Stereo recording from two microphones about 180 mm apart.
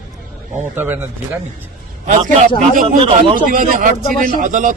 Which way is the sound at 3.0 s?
30° right (ahead or behind).